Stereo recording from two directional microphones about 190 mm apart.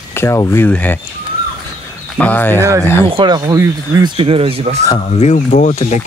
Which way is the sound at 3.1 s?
25° right (ahead or behind).